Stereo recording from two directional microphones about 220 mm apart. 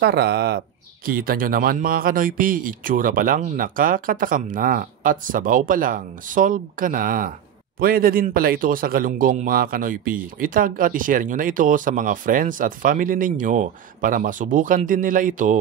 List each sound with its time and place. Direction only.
0.0 s speech: 50° right (ahead or behind)